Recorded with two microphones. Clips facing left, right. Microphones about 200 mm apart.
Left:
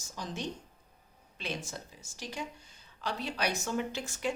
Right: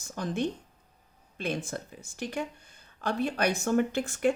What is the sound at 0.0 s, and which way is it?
A woman's voice, 55° right (ahead or behind).